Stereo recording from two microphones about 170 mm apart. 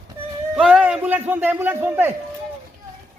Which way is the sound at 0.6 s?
5° right (ahead or behind).